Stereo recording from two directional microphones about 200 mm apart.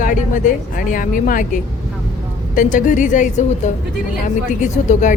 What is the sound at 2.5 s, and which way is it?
Speech, 40° left (ahead or behind).